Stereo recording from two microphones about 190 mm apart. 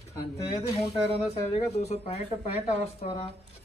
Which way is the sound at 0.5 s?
30° left (ahead or behind).